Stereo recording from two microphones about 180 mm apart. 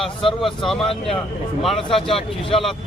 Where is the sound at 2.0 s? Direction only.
30° left (ahead or behind).